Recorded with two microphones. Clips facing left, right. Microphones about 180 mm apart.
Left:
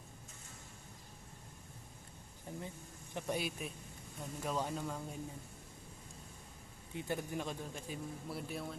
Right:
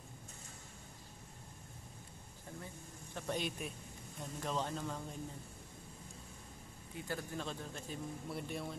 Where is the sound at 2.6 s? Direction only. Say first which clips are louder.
Left 2 dB; 15° left (ahead or behind).